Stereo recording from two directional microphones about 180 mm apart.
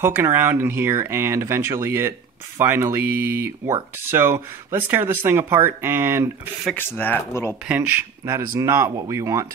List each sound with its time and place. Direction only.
0.0 s speech: 15° right (ahead or behind)
6.6 s speech: 10° left (ahead or behind)
7.6 s speech: 10° right (ahead or behind)